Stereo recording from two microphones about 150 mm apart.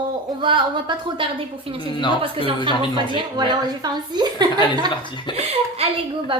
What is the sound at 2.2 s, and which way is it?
A child's voice, 35° right (ahead or behind).